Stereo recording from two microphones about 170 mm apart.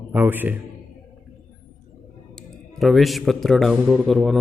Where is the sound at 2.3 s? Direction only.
Centre (ahead or behind).